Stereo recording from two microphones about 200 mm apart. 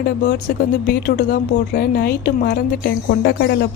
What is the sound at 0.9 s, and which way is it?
Speech, 50° left (ahead or behind).